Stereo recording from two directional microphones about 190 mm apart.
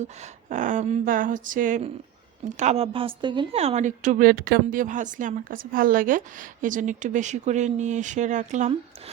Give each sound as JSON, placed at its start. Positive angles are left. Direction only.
{"t": 0.0, "sound": "a woman's voice", "side_deg": -40}